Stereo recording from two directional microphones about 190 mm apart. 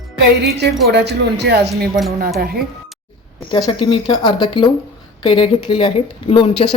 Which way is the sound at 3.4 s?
25° left (ahead or behind).